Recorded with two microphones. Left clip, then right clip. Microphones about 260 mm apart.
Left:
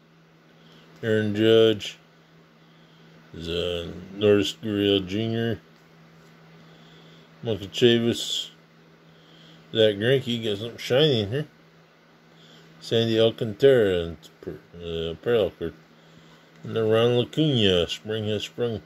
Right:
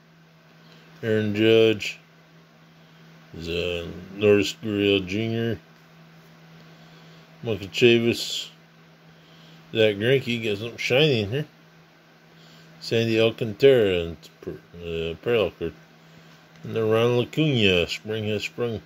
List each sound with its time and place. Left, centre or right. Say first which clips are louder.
1.0 s speech: even; centre
3.3 s speech: even; centre
7.4 s speech: right 2 dB; centre
9.7 s speech: even; centre
12.8 s speech: even; centre
16.7 s speech: even; centre